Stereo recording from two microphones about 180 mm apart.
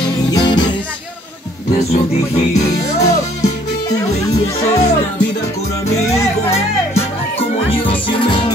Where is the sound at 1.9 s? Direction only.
40° left (ahead or behind).